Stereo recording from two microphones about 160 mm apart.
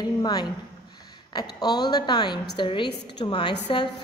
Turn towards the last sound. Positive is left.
turn(degrees=30)  # may be behind; listen again after turning